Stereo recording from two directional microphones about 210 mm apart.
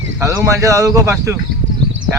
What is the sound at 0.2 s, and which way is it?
Speech, 15° right (ahead or behind).